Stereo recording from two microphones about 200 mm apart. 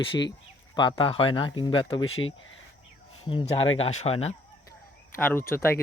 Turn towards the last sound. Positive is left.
turn(degrees=10)  # may be behind; listen again after turning